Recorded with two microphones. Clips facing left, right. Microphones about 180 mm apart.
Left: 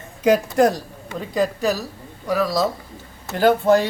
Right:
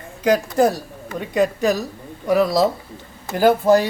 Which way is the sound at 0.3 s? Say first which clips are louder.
Even; 5° right (ahead or behind).